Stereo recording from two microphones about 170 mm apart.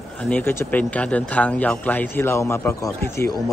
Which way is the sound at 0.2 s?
10° left (ahead or behind).